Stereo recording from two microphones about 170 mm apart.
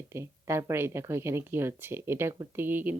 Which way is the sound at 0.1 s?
15° right (ahead or behind).